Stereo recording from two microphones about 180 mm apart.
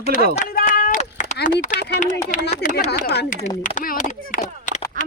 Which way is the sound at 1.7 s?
70° left (ahead or behind).